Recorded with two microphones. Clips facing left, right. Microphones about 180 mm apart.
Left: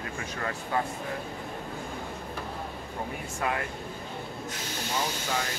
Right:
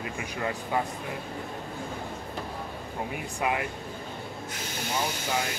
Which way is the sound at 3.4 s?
15° right (ahead or behind).